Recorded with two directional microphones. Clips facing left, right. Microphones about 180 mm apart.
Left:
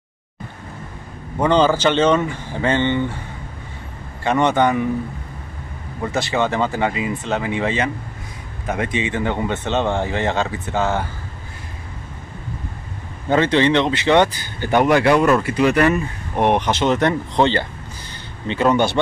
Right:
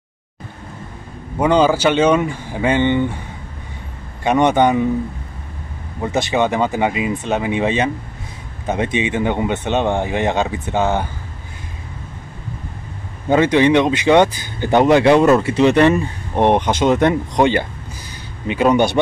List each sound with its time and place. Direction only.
1.4 s speech: 10° right (ahead or behind)
4.2 s speech: 15° right (ahead or behind)
6.1 s speech: 20° right (ahead or behind)
13.3 s speech: 15° right (ahead or behind)